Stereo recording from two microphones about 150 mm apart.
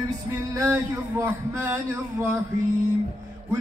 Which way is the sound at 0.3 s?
20° right (ahead or behind).